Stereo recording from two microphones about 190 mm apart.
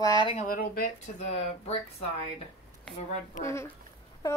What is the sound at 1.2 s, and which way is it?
Speech, 35° left (ahead or behind).